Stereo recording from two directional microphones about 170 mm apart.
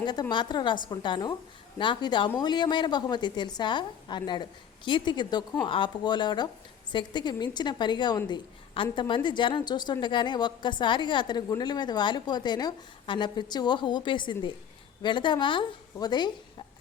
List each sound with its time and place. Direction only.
0.0 s a woman's voice: 25° left (ahead or behind)